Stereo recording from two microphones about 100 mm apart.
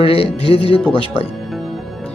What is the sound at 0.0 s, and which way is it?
Speech, 70° left (ahead or behind).